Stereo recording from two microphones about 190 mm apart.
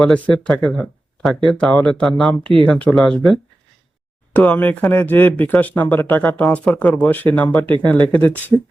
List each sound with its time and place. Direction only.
0.0 s speech: 5° left (ahead or behind)
2.4 s speech: 25° right (ahead or behind)
2.6 s speech: 5° left (ahead or behind)
4.4 s speech: 10° left (ahead or behind)